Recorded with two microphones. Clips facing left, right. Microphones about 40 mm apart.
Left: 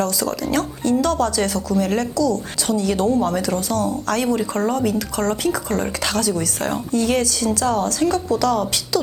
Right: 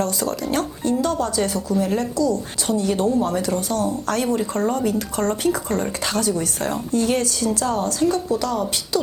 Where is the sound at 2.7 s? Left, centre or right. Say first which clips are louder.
Left 1 dB; left.